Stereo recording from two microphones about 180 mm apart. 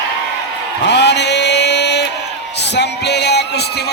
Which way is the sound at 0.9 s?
75° left (ahead or behind).